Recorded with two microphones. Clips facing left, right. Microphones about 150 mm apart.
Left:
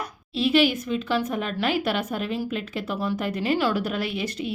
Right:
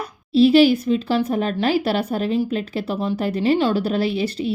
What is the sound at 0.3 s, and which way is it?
Speech, 35° right (ahead or behind).